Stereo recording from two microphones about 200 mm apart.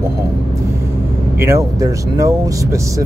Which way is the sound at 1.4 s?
15° right (ahead or behind).